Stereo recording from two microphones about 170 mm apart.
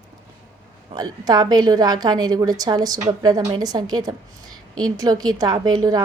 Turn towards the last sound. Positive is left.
turn(degrees=-25)  # may be behind; listen again after turning